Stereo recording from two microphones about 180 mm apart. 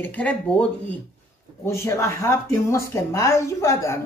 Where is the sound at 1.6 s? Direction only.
15° left (ahead or behind).